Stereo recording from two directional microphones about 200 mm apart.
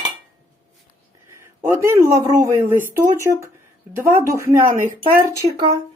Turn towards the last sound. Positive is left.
turn(degrees=-15)  # may be behind; listen again after turning